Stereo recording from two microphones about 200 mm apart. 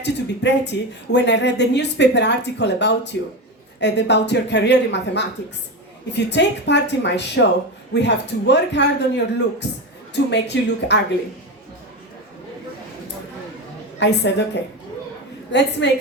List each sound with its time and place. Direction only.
0.0 s speech: 60° left (ahead or behind)
14.0 s speech: 60° left (ahead or behind)
15.8 s speech: 60° left (ahead or behind)